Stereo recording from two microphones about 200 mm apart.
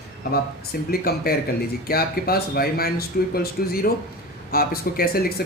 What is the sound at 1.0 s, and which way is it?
Speech, 50° left (ahead or behind).